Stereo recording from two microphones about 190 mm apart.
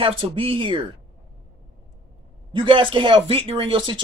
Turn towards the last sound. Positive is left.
turn(degrees=-25)  # may be behind; listen again after turning